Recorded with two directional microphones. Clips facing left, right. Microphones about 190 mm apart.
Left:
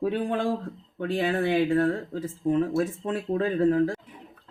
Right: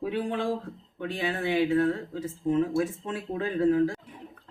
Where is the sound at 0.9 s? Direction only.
55° left (ahead or behind).